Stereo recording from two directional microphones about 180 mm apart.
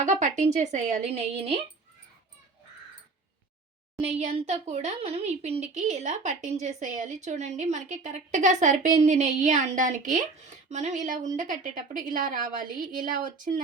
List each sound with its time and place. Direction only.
0.0 s speech: 40° right (ahead or behind)
4.0 s a woman's voice: 35° right (ahead or behind)